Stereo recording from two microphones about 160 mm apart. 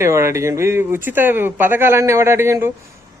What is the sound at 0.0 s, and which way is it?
Speech, 15° right (ahead or behind).